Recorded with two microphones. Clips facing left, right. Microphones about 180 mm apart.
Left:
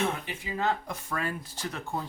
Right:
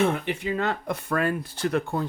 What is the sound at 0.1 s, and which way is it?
Speech, 65° right (ahead or behind).